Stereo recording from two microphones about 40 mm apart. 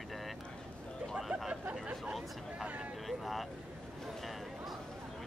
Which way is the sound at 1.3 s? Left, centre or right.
Right.